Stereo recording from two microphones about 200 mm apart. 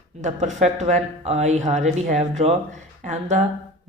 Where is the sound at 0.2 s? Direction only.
35° right (ahead or behind).